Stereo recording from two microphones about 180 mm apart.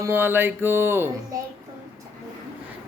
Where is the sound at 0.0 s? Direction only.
10° right (ahead or behind).